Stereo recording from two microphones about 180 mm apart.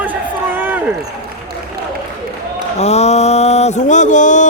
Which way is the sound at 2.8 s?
35° left (ahead or behind).